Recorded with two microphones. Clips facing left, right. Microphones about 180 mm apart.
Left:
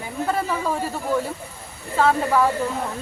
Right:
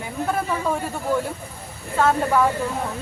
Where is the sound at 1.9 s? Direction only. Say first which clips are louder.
Even; centre (ahead or behind).